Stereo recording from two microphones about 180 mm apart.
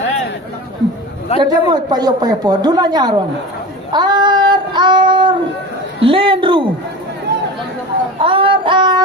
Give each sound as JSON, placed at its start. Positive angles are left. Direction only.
{"t": 1.4, "sound": "a woman's voice", "side_deg": -25}
{"t": 3.9, "sound": "child singing", "side_deg": -25}
{"t": 6.0, "sound": "a woman's voice", "side_deg": -30}
{"t": 7.3, "sound": "a sound", "side_deg": -65}
{"t": 8.2, "sound": "child singing", "side_deg": -30}